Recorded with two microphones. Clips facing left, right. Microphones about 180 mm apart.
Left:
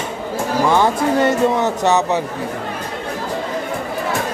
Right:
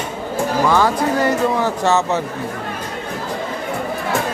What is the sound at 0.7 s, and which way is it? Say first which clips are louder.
A man's voice: left 1 dB; 25° left (ahead or behind).